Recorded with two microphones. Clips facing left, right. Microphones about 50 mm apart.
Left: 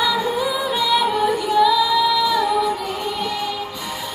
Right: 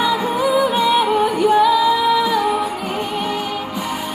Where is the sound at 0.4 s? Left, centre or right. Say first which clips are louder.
Right 5 dB; right.